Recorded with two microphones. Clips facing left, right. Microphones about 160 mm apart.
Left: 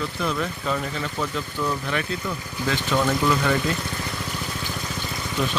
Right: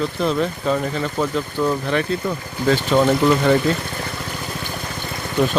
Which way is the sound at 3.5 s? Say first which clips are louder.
Right 7 dB; 30° right (ahead or behind).